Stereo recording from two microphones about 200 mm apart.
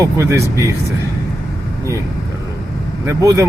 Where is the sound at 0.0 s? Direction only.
15° right (ahead or behind).